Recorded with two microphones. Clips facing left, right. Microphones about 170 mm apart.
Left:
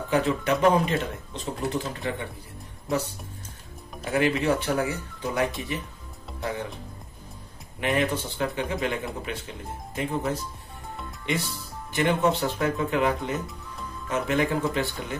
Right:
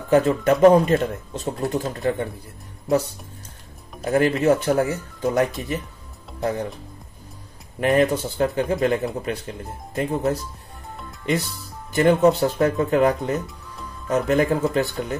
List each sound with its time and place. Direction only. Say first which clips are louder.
0.1 s speech: right 7 dB; 45° right (ahead or behind)
4.0 s speech: right 5 dB; 45° right (ahead or behind)
7.8 s speech: right 7 dB; 40° right (ahead or behind)
11.9 s speech: right 7 dB; 40° right (ahead or behind)